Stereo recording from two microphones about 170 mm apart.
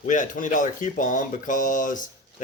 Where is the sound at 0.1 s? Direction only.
50° left (ahead or behind).